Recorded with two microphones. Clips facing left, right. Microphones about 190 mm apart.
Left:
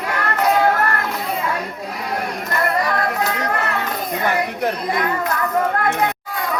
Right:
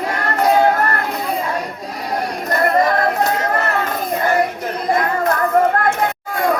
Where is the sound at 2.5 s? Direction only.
45° right (ahead or behind).